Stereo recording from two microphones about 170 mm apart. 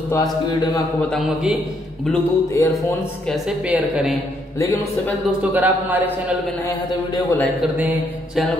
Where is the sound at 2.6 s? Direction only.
15° left (ahead or behind).